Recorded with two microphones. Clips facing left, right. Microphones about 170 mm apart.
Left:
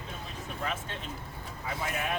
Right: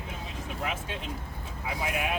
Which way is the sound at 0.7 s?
15° right (ahead or behind).